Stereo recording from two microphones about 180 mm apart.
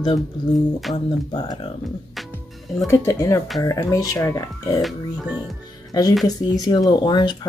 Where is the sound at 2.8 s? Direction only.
15° left (ahead or behind).